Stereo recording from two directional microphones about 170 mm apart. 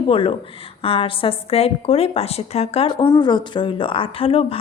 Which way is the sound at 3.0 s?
20° left (ahead or behind).